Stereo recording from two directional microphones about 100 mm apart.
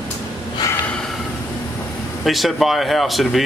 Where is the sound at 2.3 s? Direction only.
Centre (ahead or behind).